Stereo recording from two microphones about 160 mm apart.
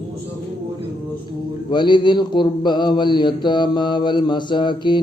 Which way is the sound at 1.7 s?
30° left (ahead or behind).